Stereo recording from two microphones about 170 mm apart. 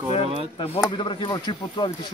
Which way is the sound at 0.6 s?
30° left (ahead or behind).